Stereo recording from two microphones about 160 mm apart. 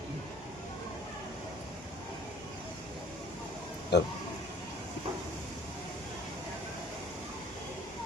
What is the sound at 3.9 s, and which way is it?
Speech, 90° left.